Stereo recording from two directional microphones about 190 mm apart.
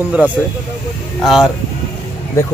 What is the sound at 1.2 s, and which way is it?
Speech, centre (ahead or behind).